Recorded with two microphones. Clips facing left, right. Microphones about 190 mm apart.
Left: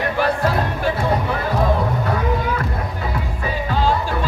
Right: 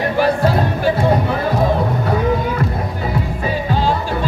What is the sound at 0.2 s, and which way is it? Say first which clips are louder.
Music: right 4 dB; 30° right (ahead or behind).